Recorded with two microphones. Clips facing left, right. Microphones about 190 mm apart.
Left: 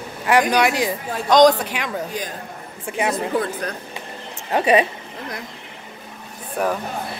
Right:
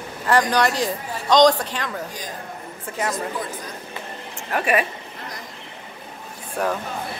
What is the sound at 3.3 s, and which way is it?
Speech, 60° left (ahead or behind).